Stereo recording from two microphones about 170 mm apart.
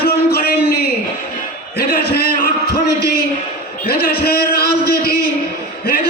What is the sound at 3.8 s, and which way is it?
A man's voice, 65° left (ahead or behind).